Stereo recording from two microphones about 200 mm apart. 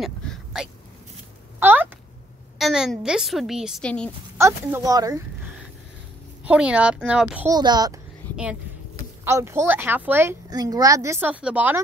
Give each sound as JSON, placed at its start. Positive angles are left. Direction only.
{"t": 0.0, "sound": "vehicle", "side_deg": 0}
{"t": 1.6, "sound": "a sound", "side_deg": -10}
{"t": 2.6, "sound": "a woman's voice", "side_deg": 0}
{"t": 4.4, "sound": "a woman's voice", "side_deg": -10}
{"t": 6.4, "sound": "a woman's voice", "side_deg": -5}
{"t": 7.4, "sound": "a woman's voice", "side_deg": -20}
{"t": 9.2, "sound": "a woman's voice", "side_deg": -15}